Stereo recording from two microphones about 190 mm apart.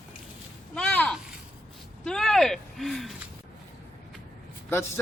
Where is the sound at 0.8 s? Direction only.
10° left (ahead or behind).